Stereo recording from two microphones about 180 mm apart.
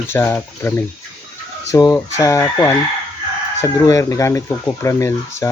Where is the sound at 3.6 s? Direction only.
20° left (ahead or behind).